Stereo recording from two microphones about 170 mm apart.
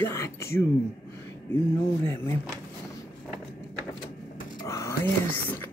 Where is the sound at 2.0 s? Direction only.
15° left (ahead or behind).